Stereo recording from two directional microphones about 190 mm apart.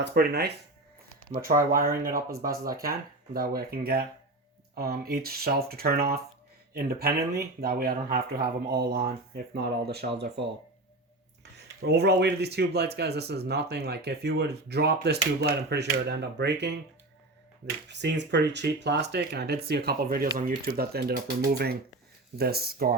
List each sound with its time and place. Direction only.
0.0 s speech: 55° right (ahead or behind)
11.8 s speech: 60° right (ahead or behind)
17.8 s speech: 65° right (ahead or behind)
22.4 s speech: 55° right (ahead or behind)